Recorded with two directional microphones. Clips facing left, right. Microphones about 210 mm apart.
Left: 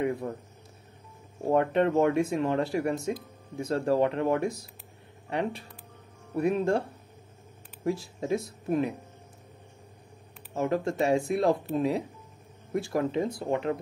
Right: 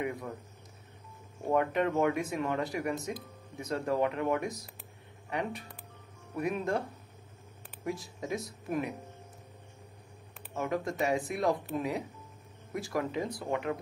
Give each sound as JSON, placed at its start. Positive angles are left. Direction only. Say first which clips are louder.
{"t": 0.0, "sound": "speech", "louder": "left 6 dB", "side_deg": 30}
{"t": 1.5, "sound": "speech", "louder": "left 5 dB", "side_deg": 30}
{"t": 7.8, "sound": "speech", "louder": "left 6 dB", "side_deg": 30}
{"t": 10.5, "sound": "speech", "louder": "left 5 dB", "side_deg": 30}